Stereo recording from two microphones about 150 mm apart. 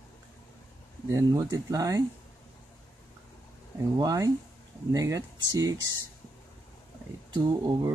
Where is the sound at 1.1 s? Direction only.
25° right (ahead or behind).